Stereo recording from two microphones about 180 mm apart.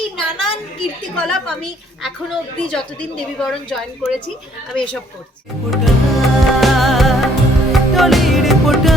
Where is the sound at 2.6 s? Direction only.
5° left (ahead or behind).